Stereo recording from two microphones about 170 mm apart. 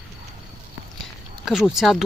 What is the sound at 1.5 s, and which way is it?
Speech, centre (ahead or behind).